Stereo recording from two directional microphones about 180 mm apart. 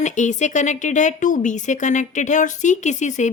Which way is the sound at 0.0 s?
40° left (ahead or behind).